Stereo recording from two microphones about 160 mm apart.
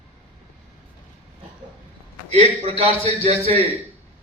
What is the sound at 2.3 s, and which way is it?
A man's voice, 40° right (ahead or behind).